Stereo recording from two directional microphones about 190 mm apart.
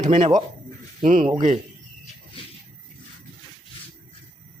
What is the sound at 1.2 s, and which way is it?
Speech, 25° right (ahead or behind).